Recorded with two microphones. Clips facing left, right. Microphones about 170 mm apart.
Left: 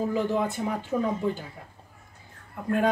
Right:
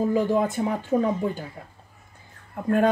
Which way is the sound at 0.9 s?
35° right (ahead or behind).